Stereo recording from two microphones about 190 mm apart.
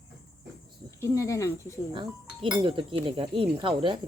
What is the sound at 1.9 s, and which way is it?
Speech, 25° right (ahead or behind).